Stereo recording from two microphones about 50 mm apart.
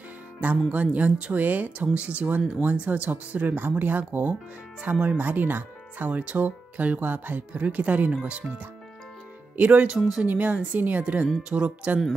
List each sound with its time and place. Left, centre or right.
0.4 s speech: right